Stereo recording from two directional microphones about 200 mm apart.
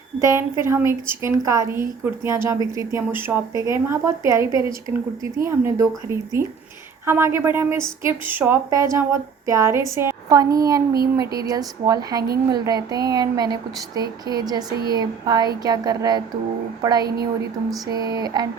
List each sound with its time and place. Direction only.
0.2 s a woman's voice: 15° right (ahead or behind)